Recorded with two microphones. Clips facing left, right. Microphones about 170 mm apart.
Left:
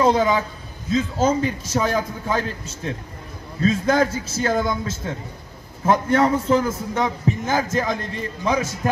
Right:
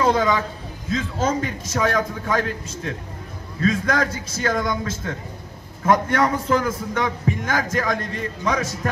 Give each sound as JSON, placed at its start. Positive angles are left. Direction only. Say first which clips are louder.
{"t": 0.1, "sound": "a man's voice", "louder": "left 1 dB", "side_deg": 25}